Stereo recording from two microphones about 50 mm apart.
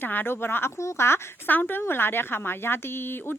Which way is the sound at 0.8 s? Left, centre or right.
Left.